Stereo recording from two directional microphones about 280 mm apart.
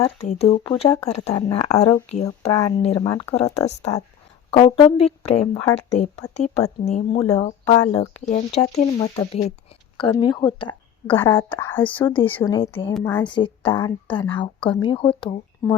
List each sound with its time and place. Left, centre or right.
0.0 s a woman's voice: left
4.5 s speech: centre
7.2 s a woman's voice: centre
8.2 s a woman's voice: left